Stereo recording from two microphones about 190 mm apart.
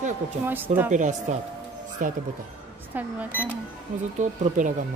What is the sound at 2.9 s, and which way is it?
Speech, 10° right (ahead or behind).